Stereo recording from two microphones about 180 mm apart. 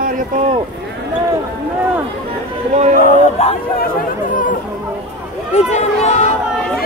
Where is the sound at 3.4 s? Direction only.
35° left (ahead or behind).